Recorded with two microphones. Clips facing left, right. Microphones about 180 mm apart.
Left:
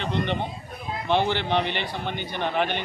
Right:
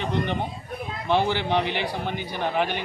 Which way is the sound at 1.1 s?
5° right (ahead or behind).